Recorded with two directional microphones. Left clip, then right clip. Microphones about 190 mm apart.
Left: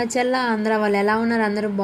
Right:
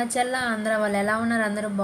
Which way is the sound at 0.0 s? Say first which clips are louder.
Left 4 dB; 20° left (ahead or behind).